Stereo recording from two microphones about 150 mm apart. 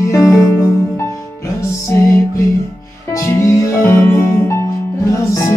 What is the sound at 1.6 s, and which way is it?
Music, 20° left (ahead or behind).